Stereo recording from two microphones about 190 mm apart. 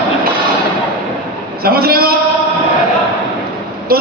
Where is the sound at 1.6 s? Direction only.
50° right (ahead or behind).